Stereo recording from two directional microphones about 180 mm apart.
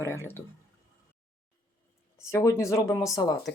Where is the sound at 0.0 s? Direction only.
15° left (ahead or behind).